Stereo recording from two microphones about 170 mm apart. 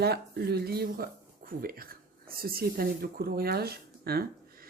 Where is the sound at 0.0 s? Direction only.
70° right (ahead or behind).